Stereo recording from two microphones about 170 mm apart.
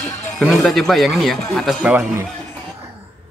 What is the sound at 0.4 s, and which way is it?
Speech, centre (ahead or behind).